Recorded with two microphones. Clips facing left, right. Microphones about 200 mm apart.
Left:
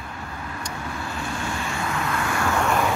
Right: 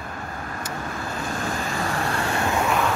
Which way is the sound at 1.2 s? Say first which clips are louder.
Right 2 dB; 40° right (ahead or behind).